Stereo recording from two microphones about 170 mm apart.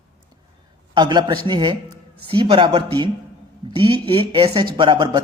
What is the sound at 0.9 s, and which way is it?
Speech, 25° right (ahead or behind).